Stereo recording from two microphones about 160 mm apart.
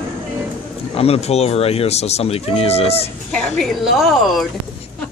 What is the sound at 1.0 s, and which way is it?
Speech, 40° left (ahead or behind).